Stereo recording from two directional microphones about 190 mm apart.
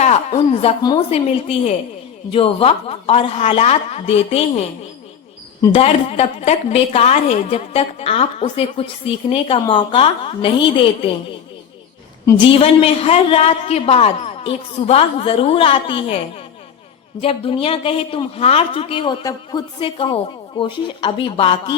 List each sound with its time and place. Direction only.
0.0 s a man's voice: 35° left (ahead or behind)
5.7 s a woman's voice: 30° left (ahead or behind)
12.2 s a woman's voice: 25° left (ahead or behind)